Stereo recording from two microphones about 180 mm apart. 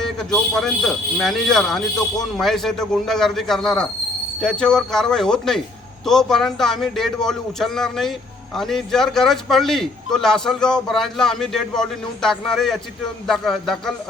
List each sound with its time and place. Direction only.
0.0 s a man's voice: 5° left (ahead or behind)